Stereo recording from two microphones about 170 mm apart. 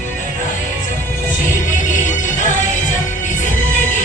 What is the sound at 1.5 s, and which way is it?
Music, 50° left (ahead or behind).